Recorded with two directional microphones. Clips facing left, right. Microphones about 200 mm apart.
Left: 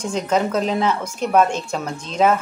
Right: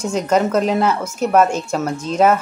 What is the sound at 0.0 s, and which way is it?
Speech, 10° right (ahead or behind).